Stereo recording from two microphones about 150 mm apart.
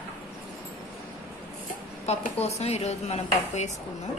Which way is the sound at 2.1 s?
45° left (ahead or behind).